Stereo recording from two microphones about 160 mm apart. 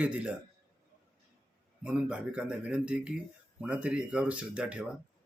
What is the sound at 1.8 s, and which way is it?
Speech, 10° right (ahead or behind).